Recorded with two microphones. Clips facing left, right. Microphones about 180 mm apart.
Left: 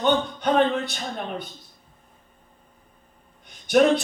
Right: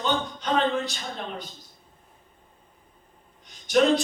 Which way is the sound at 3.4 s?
55° left (ahead or behind).